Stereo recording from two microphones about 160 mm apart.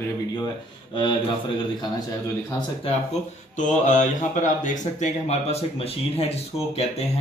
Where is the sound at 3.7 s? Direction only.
50° left (ahead or behind).